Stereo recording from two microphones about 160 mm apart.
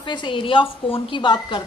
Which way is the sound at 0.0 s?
30° left (ahead or behind).